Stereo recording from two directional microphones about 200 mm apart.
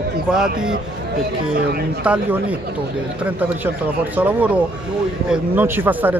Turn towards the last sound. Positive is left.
turn(degrees=-10)  # may be behind; listen again after turning